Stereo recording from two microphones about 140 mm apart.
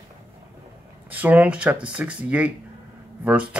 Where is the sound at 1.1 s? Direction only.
10° right (ahead or behind).